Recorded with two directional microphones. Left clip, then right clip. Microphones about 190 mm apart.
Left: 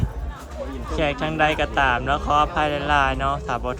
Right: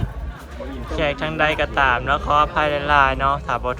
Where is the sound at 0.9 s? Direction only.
15° left (ahead or behind).